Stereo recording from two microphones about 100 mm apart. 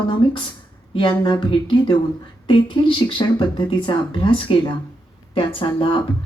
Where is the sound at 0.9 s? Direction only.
50° left (ahead or behind).